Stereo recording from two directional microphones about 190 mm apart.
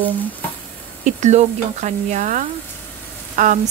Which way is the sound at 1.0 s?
40° right (ahead or behind).